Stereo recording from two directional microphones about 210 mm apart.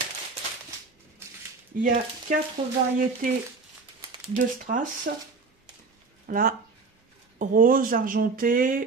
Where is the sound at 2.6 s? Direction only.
20° right (ahead or behind).